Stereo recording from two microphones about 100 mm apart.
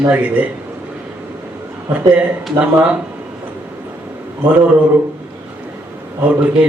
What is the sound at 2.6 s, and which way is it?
Speech, 10° right (ahead or behind).